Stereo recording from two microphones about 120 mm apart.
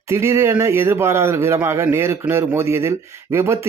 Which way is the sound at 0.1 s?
25° right (ahead or behind).